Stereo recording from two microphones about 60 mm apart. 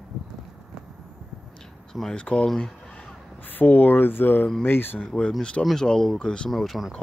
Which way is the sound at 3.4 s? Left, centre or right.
Left.